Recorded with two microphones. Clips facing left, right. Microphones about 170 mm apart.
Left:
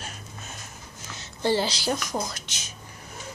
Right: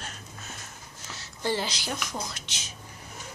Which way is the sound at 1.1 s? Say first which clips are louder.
Left 5 dB; 30° left (ahead or behind).